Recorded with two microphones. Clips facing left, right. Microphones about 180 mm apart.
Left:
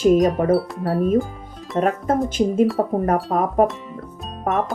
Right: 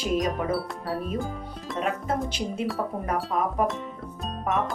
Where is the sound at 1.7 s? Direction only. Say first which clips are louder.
Left 8 dB; 45° left (ahead or behind).